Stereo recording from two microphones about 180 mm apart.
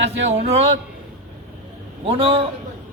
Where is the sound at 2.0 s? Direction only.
30° right (ahead or behind).